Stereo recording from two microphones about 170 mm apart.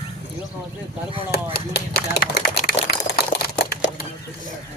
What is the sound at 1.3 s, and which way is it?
Speech, 70° left (ahead or behind).